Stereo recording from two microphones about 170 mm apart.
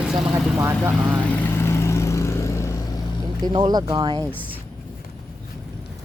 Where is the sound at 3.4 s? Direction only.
25° right (ahead or behind).